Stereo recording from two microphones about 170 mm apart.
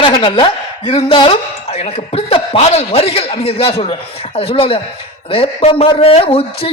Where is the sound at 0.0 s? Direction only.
30° left (ahead or behind).